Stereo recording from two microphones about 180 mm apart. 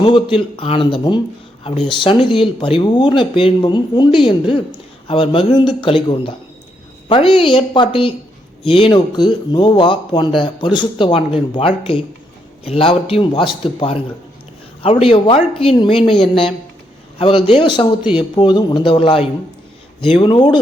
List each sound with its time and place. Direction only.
0.0 s speech: 30° left (ahead or behind)